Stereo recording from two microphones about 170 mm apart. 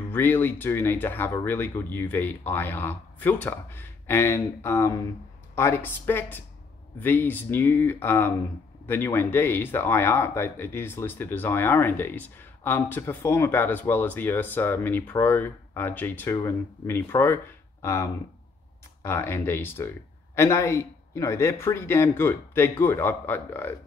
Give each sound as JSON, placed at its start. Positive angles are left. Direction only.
{"t": 0.1, "sound": "speech", "side_deg": 10}